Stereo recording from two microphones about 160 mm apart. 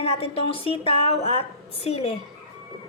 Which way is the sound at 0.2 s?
35° left (ahead or behind).